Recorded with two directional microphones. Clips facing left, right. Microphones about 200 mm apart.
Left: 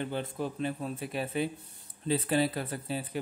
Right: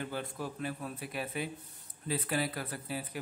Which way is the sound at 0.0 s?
25° left (ahead or behind).